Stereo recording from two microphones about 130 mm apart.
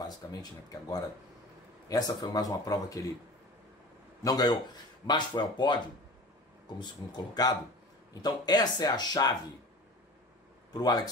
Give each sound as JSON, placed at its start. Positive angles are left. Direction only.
{"t": 0.0, "sound": "speech", "side_deg": 30}
{"t": 4.2, "sound": "speech", "side_deg": 30}
{"t": 10.7, "sound": "speech", "side_deg": 30}